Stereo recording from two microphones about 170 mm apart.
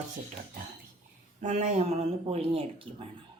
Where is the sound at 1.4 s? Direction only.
45° right (ahead or behind).